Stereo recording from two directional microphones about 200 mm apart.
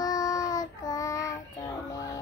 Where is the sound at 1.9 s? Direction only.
15° left (ahead or behind).